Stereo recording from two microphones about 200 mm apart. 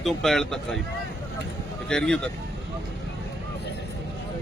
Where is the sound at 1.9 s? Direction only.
5° left (ahead or behind).